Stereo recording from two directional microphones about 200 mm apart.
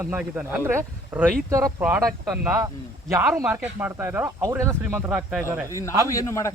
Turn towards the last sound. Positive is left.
turn(degrees=15)  # may be behind; listen again after turning